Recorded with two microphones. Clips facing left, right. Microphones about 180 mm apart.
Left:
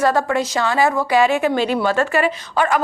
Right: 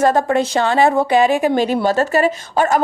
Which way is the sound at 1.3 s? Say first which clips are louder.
Right 2 dB; 40° right (ahead or behind).